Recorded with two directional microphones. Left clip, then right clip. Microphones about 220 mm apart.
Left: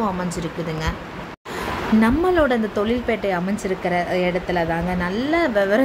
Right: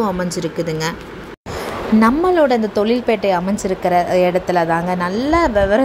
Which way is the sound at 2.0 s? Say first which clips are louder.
Right 5 dB; 15° right (ahead or behind).